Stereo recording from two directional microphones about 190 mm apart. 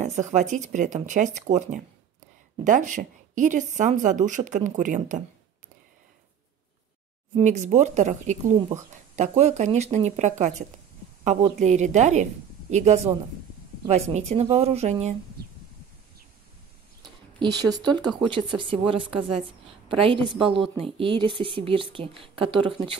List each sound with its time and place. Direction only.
0.0 s a woman's voice: 40° right (ahead or behind)
7.3 s a woman's voice: 35° right (ahead or behind)
17.6 s speech: 20° right (ahead or behind)